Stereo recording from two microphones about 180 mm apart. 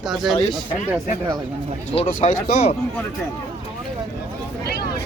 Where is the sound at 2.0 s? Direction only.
50° left (ahead or behind).